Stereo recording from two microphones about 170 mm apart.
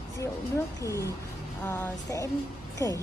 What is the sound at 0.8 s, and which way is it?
Speech, 20° left (ahead or behind).